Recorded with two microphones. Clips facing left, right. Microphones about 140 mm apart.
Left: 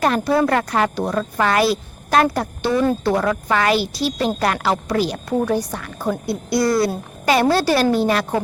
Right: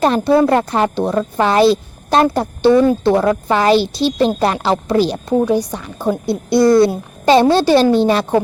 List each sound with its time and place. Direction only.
0.0 s speech: 25° right (ahead or behind)
5.5 s speech: 15° right (ahead or behind)